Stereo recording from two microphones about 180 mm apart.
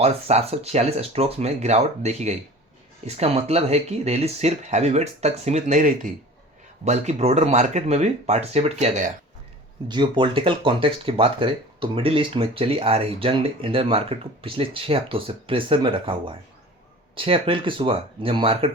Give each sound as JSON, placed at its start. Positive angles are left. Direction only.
{"t": 0.0, "sound": "speech", "side_deg": -35}
{"t": 9.9, "sound": "speech", "side_deg": -25}